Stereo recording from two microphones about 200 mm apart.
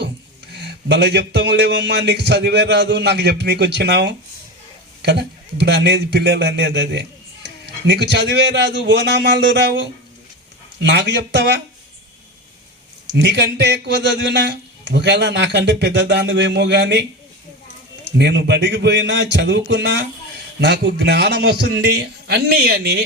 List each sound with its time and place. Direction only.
0.5 s a man's voice: 55° right (ahead or behind)
13.1 s a man's voice: 60° right (ahead or behind)
18.2 s a man's voice: 60° right (ahead or behind)